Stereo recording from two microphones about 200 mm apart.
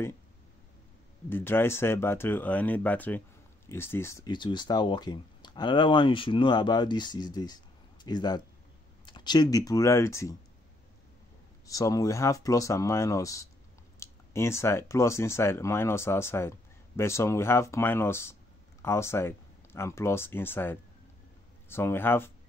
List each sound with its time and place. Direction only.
1.3 s speech: 10° left (ahead or behind)
11.6 s speech: 15° left (ahead or behind)